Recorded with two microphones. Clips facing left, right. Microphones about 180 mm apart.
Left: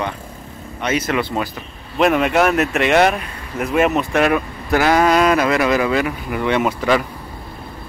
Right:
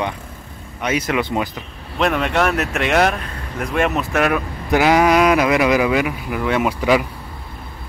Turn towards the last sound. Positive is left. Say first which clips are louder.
# even
turn(degrees=-10)  # may be behind; listen again after turning